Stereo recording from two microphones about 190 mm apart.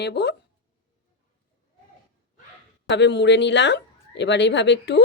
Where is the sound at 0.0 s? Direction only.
60° left (ahead or behind).